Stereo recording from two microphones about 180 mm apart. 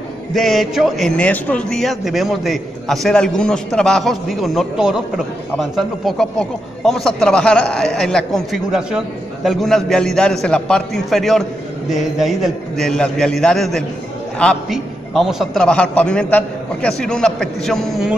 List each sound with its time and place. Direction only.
0.3 s a man's voice: centre (ahead or behind)